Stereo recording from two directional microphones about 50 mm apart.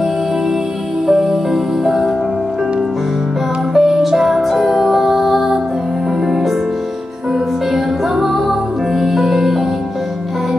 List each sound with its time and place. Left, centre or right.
1.0 s music: centre
3.7 s music: centre